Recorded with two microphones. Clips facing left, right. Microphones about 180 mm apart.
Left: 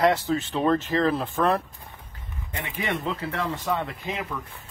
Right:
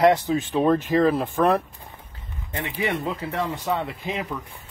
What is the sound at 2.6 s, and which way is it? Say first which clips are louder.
Speech: right 3 dB; 20° right (ahead or behind).